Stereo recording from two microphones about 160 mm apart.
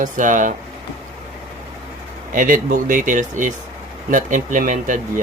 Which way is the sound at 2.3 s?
60° right (ahead or behind).